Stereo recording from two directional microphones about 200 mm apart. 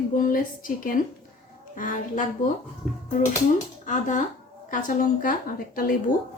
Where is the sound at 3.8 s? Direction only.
40° left (ahead or behind).